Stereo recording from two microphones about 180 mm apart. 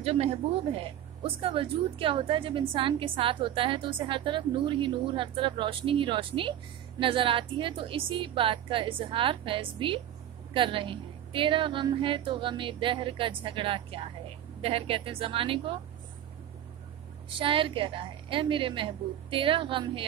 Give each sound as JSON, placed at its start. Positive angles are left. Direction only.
{"t": 0.0, "sound": "a woman's voice", "side_deg": -35}
{"t": 17.4, "sound": "speech", "side_deg": -30}